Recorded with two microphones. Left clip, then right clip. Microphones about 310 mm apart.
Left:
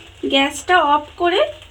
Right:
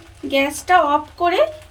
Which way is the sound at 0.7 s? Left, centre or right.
Centre.